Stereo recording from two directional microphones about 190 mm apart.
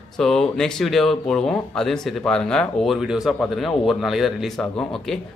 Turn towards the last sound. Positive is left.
turn(degrees=5)  # may be behind; listen again after turning